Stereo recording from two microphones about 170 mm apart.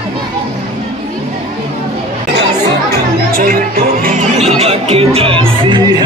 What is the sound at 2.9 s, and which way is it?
Music, 60° right (ahead or behind).